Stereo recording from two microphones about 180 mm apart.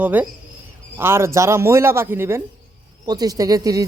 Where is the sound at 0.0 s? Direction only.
10° right (ahead or behind).